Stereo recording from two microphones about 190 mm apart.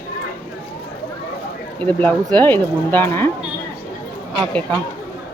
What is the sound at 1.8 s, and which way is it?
Speech, 10° left (ahead or behind).